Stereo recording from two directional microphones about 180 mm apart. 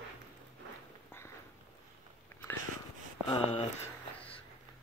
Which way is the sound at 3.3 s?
35° left (ahead or behind).